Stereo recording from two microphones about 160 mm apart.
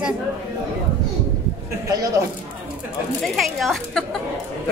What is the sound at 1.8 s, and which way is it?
Speech, 20° right (ahead or behind).